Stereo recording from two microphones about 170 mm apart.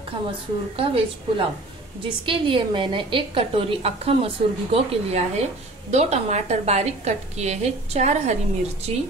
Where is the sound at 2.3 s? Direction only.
30° right (ahead or behind).